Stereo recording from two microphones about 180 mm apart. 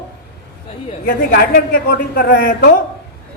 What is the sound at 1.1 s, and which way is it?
A man's voice, 55° left (ahead or behind).